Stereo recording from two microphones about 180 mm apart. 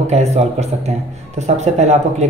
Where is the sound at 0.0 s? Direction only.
35° right (ahead or behind).